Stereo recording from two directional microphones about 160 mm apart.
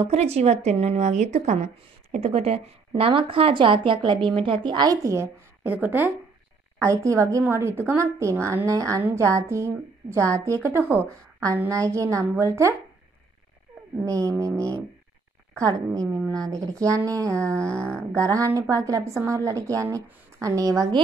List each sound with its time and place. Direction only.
0.0 s a woman's voice: 40° right (ahead or behind); by 12.7 s 20° right (ahead or behind)
14.0 s a woman's voice: 20° right (ahead or behind)